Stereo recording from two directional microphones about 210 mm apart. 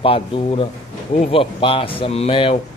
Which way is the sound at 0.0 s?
25° left (ahead or behind).